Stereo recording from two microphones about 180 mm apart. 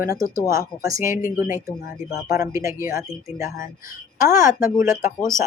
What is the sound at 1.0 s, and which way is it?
Speech, 50° left (ahead or behind).